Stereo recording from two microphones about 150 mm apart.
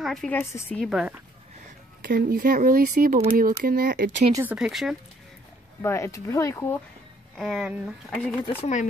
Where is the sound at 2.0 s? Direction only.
75° right (ahead or behind).